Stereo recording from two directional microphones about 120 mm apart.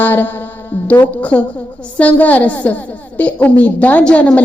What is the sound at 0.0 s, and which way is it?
A woman's voice, 15° left (ahead or behind).